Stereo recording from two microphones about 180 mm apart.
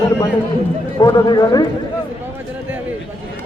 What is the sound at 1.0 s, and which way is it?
Speech, 20° left (ahead or behind).